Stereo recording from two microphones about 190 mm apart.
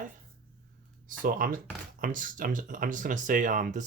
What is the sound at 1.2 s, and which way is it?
Speech, 45° right (ahead or behind).